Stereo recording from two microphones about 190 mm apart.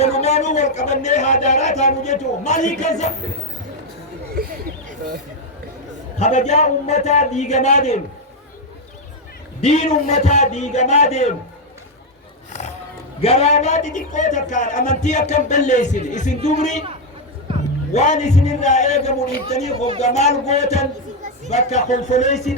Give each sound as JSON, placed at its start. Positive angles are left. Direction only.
{"t": 0.0, "sound": "speech", "side_deg": 35}
{"t": 6.1, "sound": "speech", "side_deg": 35}
{"t": 9.6, "sound": "speech", "side_deg": 35}
{"t": 12.5, "sound": "a sound", "side_deg": 40}
{"t": 13.2, "sound": "speech", "side_deg": 35}
{"t": 17.9, "sound": "speech", "side_deg": 40}